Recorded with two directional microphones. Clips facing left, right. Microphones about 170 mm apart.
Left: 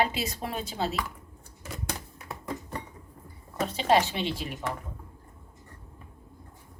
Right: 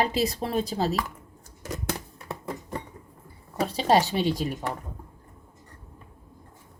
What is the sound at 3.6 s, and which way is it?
Speech, 35° right (ahead or behind).